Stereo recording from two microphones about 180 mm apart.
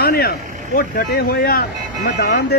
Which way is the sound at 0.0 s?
60° left (ahead or behind).